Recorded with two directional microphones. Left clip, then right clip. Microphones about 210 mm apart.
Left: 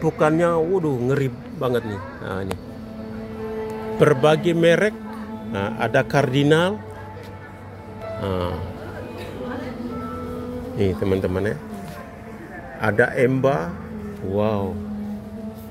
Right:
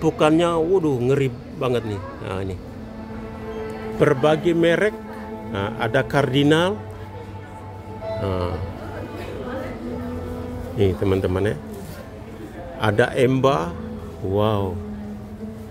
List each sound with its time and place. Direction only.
0.0 s a man's voice: centre (ahead or behind)
4.0 s a man's voice: 15° left (ahead or behind)
8.2 s speech: 5° left (ahead or behind)
10.8 s speech: centre (ahead or behind)
12.8 s speech: 5° right (ahead or behind)